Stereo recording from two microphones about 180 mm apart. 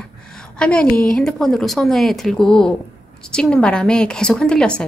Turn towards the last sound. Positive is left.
turn(degrees=5)  # may be behind; listen again after turning